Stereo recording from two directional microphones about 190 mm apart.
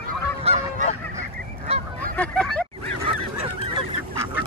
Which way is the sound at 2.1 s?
5° left (ahead or behind).